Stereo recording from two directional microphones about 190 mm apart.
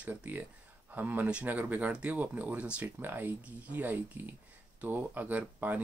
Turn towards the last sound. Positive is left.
turn(degrees=-10)  # may be behind; listen again after turning